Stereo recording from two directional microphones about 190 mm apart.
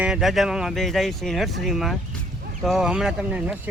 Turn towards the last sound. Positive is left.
turn(degrees=-5)  # may be behind; listen again after turning